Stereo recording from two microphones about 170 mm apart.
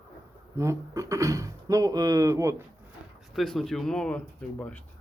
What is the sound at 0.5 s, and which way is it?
Speech, 15° right (ahead or behind).